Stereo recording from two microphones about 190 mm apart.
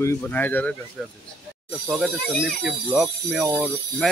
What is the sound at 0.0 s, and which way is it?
Speech, 10° left (ahead or behind).